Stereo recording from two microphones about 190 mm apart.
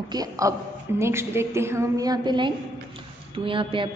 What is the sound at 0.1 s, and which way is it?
A woman's voice, 20° right (ahead or behind).